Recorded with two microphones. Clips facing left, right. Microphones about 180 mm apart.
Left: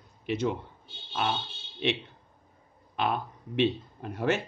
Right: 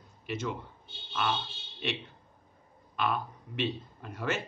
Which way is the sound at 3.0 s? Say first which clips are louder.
Left 2 dB; 55° left (ahead or behind).